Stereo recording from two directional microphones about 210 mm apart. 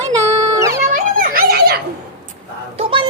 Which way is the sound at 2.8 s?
25° right (ahead or behind).